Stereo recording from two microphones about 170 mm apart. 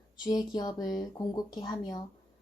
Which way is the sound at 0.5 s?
25° left (ahead or behind).